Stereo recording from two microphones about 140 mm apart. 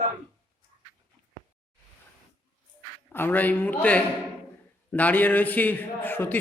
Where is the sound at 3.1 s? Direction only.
15° left (ahead or behind).